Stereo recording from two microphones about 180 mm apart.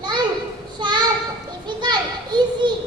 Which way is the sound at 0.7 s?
25° right (ahead or behind).